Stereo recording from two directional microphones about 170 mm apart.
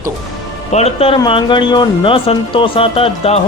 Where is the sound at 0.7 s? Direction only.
40° left (ahead or behind).